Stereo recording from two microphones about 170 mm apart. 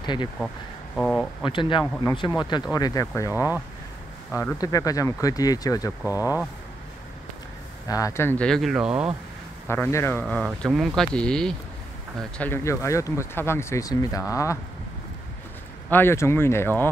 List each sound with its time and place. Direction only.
0.0 s speech: 25° left (ahead or behind)
0.9 s speech: 5° left (ahead or behind)
1.4 s speech: 30° left (ahead or behind)
6.0 s speech: 10° right (ahead or behind)
7.9 s speech: 15° left (ahead or behind); by 9.1 s 5° right (ahead or behind)
9.7 s speech: 15° left (ahead or behind)
10.2 s speech: centre (ahead or behind); by 14.6 s 20° left (ahead or behind)
15.9 s speech: 15° left (ahead or behind)